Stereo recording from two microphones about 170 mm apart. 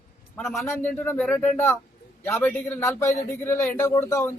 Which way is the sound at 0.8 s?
10° left (ahead or behind).